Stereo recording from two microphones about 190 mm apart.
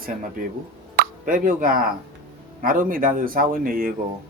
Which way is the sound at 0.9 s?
45° right (ahead or behind).